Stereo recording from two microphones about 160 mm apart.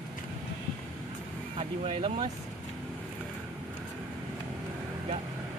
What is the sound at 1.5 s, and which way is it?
Speech, 35° right (ahead or behind).